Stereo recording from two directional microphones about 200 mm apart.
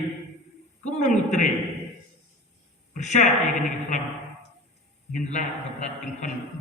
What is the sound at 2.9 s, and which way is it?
Speech, 35° left (ahead or behind).